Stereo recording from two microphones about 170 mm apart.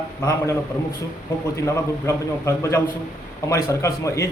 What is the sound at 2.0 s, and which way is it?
A man's voice, 15° left (ahead or behind).